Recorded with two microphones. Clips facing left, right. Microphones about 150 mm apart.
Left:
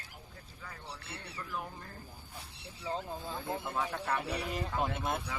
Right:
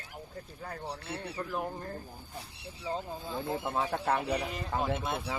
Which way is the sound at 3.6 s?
30° right (ahead or behind).